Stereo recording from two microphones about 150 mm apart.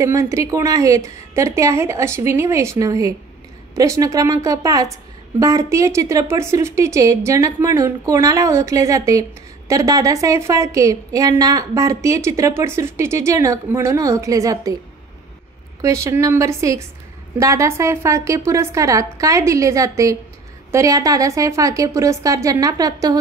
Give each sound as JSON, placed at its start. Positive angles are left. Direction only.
{"t": 0.0, "sound": "a woman's voice", "side_deg": -20}
{"t": 15.8, "sound": "a woman's voice", "side_deg": -20}